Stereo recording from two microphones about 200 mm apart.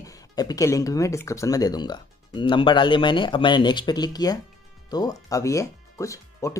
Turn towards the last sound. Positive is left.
turn(degrees=15)  # may be behind; listen again after turning